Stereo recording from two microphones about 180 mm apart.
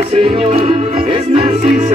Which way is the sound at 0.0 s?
30° right (ahead or behind).